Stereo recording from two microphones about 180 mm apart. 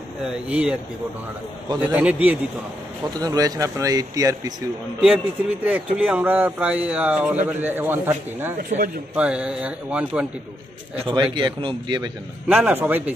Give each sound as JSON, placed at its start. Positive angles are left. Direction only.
{"t": 0.2, "sound": "speech", "side_deg": -5}
{"t": 1.8, "sound": "speech", "side_deg": -10}
{"t": 3.1, "sound": "speech", "side_deg": -20}
{"t": 5.0, "sound": "speech", "side_deg": -10}
{"t": 8.5, "sound": "a man's voice", "side_deg": -50}
{"t": 9.1, "sound": "speech", "side_deg": -5}
{"t": 11.1, "sound": "speech", "side_deg": -25}
{"t": 12.4, "sound": "speech", "side_deg": -10}